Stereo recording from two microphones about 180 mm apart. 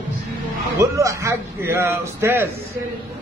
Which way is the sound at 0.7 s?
15° right (ahead or behind).